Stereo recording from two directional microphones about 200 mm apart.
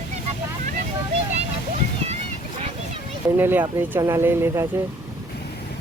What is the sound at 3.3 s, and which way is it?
Speech, 10° right (ahead or behind).